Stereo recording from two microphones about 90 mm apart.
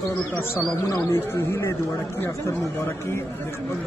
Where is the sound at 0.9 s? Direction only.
40° left (ahead or behind).